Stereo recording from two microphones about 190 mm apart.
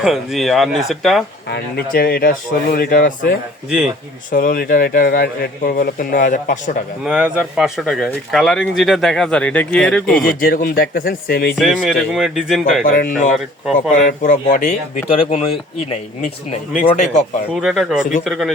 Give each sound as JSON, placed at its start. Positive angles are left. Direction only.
{"t": 0.0, "sound": "speech", "side_deg": 0}
{"t": 1.5, "sound": "a man's voice", "side_deg": 60}
{"t": 3.7, "sound": "speech", "side_deg": -5}
{"t": 4.3, "sound": "a man's voice", "side_deg": 45}
{"t": 7.0, "sound": "speech", "side_deg": -5}
{"t": 10.2, "sound": "a man's voice", "side_deg": 55}
{"t": 11.5, "sound": "speech", "side_deg": 0}
{"t": 12.8, "sound": "a man's voice", "side_deg": 50}
{"t": 16.8, "sound": "speech", "side_deg": 40}
{"t": 17.5, "sound": "speech", "side_deg": 0}